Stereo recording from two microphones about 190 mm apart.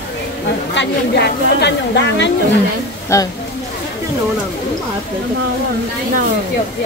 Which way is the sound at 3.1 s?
15° left (ahead or behind).